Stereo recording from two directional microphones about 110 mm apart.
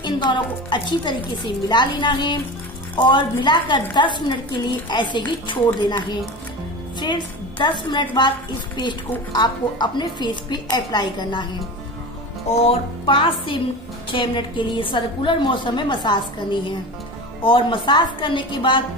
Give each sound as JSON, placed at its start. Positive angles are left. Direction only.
{"t": 0.0, "sound": "a woman's voice", "side_deg": 45}
{"t": 7.0, "sound": "a woman's voice", "side_deg": 45}
{"t": 9.3, "sound": "a woman's voice", "side_deg": 40}
{"t": 12.6, "sound": "a woman's voice", "side_deg": 50}